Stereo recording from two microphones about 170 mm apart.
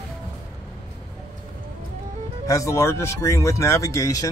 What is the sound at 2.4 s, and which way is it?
Speech, 20° left (ahead or behind).